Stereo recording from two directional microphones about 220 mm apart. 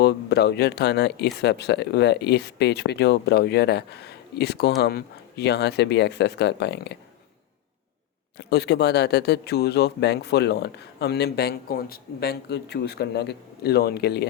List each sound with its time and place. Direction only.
0.0 s speech: 50° left (ahead or behind)
8.4 s speech: 50° left (ahead or behind)